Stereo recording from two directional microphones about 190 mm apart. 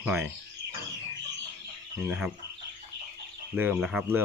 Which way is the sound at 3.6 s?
5° right (ahead or behind).